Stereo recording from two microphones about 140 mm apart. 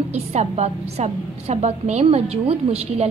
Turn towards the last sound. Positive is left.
turn(degrees=-45)  # may be behind; listen again after turning